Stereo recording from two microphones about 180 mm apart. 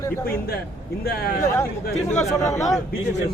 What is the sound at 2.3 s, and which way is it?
Speech, 15° left (ahead or behind).